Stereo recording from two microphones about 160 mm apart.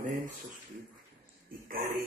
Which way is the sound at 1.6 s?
65° right (ahead or behind).